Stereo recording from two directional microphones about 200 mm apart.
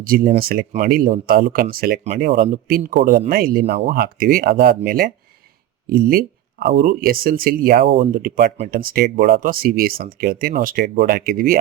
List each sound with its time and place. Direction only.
0.0 s speech: 45° right (ahead or behind)